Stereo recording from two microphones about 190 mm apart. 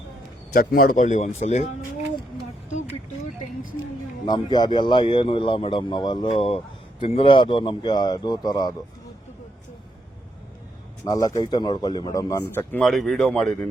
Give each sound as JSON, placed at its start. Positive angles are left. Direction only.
{"t": 0.5, "sound": "speech", "side_deg": 50}
{"t": 4.3, "sound": "speech", "side_deg": 20}
{"t": 11.0, "sound": "speech", "side_deg": 20}
{"t": 12.5, "sound": "speech", "side_deg": 5}